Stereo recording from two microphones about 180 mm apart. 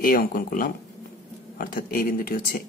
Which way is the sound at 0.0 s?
50° left (ahead or behind).